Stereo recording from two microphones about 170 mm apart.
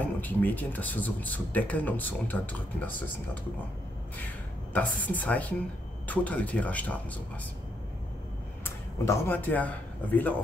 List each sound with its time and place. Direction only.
0.0 s speech: 10° left (ahead or behind)
4.7 s speech: 10° left (ahead or behind)
8.6 s speech: 15° left (ahead or behind)